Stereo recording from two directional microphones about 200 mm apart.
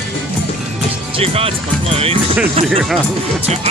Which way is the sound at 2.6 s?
30° right (ahead or behind).